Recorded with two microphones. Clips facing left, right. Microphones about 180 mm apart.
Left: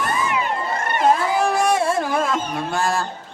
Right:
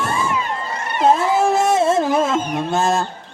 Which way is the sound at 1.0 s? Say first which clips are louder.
Right 3 dB; 25° right (ahead or behind).